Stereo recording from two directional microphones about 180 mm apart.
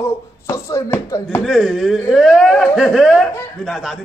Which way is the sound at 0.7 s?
15° left (ahead or behind).